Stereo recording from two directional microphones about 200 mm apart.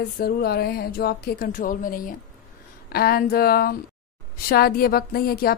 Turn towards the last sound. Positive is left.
turn(degrees=50)  # may be behind; listen again after turning